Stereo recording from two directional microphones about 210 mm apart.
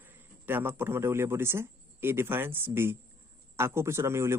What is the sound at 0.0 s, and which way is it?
A man's voice, 10° right (ahead or behind).